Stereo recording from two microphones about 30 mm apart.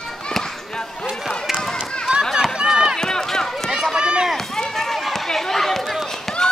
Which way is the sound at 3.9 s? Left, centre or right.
Right.